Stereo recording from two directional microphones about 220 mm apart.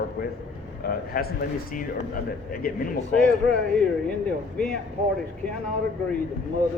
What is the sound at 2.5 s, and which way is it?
Speech, 40° left (ahead or behind).